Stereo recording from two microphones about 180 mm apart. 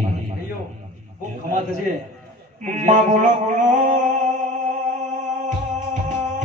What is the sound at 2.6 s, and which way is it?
Speech, 45° right (ahead or behind).